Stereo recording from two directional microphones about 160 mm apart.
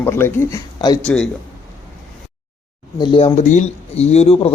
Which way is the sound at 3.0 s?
35° left (ahead or behind).